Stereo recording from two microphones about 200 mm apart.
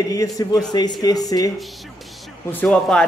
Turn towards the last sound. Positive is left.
turn(degrees=5)  # may be behind; listen again after turning